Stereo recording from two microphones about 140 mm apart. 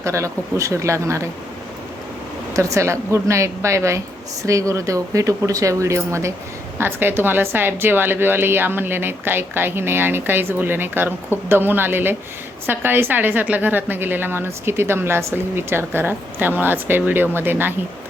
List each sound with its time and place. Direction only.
0.0 s speech: 20° right (ahead or behind)
2.5 s a woman's voice: 20° right (ahead or behind)